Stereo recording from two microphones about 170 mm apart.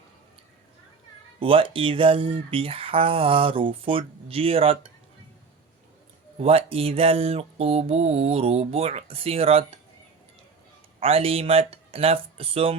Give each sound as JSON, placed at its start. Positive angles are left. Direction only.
{"t": 1.4, "sound": "speech", "side_deg": -30}
{"t": 6.4, "sound": "speech", "side_deg": -35}
{"t": 11.0, "sound": "speech", "side_deg": -35}